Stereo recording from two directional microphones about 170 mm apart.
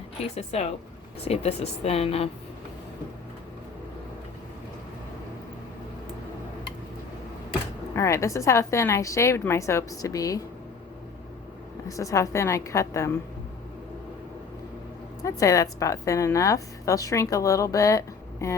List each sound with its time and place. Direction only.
0.2 s a woman's voice: 40° left (ahead or behind)
7.9 s a woman's voice: 15° left (ahead or behind)
11.9 s a woman's voice: 20° left (ahead or behind)
15.2 s a woman's voice: 20° left (ahead or behind)